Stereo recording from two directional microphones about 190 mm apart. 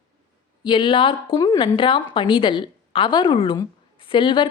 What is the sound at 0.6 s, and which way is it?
A woman's voice, 25° left (ahead or behind).